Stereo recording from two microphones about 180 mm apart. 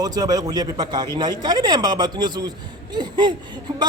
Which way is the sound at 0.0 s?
20° right (ahead or behind).